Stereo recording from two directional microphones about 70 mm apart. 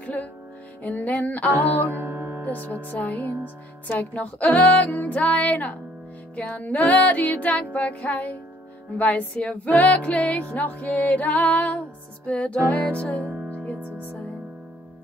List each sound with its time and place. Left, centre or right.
0.0 s music: left
1.9 s music: right
2.9 s music: left